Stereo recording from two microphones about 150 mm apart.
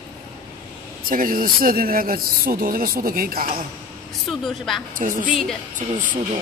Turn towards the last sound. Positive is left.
turn(degrees=-60)  # may be behind; listen again after turning